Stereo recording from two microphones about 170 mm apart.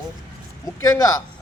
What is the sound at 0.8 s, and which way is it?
Speech, 20° left (ahead or behind).